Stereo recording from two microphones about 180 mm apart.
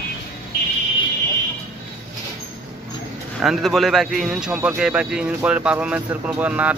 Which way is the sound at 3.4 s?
Centre (ahead or behind).